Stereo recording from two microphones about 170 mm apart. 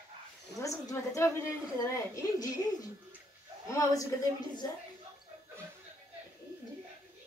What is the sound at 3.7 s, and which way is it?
Speech, 15° left (ahead or behind).